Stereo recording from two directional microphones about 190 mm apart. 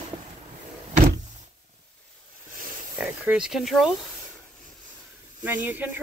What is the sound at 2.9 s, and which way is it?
Speech, 5° right (ahead or behind).